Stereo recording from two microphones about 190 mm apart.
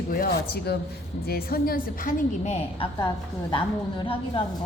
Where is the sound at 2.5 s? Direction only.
35° left (ahead or behind).